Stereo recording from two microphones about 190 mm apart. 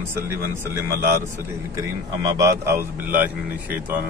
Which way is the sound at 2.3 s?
15° right (ahead or behind).